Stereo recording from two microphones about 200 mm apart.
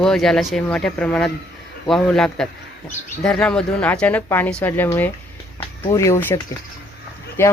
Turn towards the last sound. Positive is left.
turn(degrees=10)  # may be behind; listen again after turning